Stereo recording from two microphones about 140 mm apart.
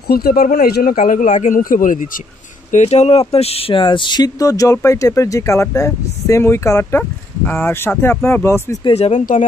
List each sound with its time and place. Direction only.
0.1 s speech: 90° left; by 2.0 s 75° left (ahead or behind)
2.7 s speech: 50° left (ahead or behind); by 8.7 s 20° left (ahead or behind)
8.9 s speech: 50° left (ahead or behind)
9.2 s speech: 65° left (ahead or behind)